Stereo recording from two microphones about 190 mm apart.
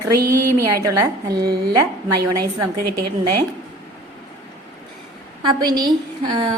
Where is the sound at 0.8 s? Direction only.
15° right (ahead or behind).